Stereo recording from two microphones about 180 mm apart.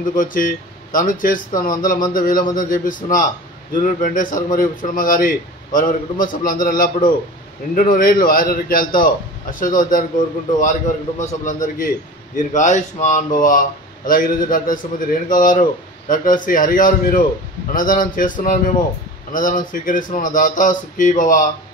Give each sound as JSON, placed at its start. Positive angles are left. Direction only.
{"t": 0.1, "sound": "a man's voice", "side_deg": 50}